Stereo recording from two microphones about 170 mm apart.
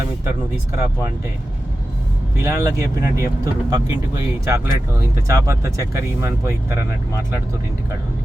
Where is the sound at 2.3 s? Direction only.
15° right (ahead or behind).